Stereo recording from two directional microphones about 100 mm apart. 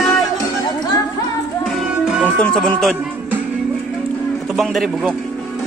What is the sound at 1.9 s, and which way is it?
Music, 10° right (ahead or behind).